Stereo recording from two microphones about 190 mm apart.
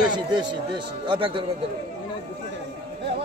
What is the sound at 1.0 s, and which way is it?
Speech, 25° right (ahead or behind).